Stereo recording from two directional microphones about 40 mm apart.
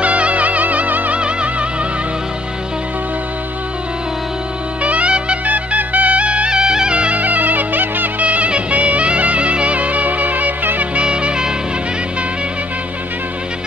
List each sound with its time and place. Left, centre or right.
0.0 s music: right
1.1 s music: right
4.8 s music: right
5.4 s music: right
7.2 s music: right
11.0 s music: right